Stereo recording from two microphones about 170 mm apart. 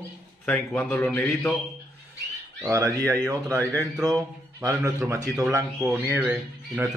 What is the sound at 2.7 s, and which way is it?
Speech, 20° right (ahead or behind).